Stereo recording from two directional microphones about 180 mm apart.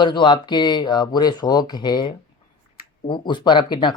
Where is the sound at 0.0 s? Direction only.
25° left (ahead or behind).